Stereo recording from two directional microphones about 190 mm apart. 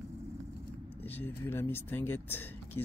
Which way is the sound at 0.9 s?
10° left (ahead or behind).